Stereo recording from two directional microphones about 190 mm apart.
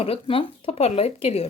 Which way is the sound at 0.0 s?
30° left (ahead or behind).